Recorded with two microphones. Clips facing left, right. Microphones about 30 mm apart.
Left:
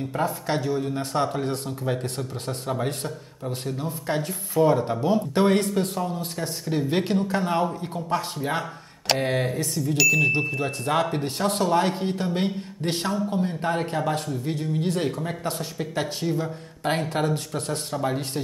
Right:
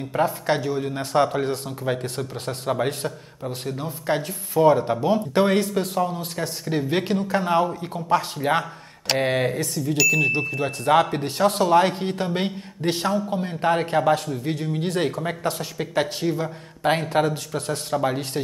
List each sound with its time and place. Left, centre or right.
0.1 s a man's voice: centre
2.9 s a man's voice: centre
7.3 s speech: centre
8.1 s a man's voice: right
9.9 s speech: centre
10.9 s a man's voice: centre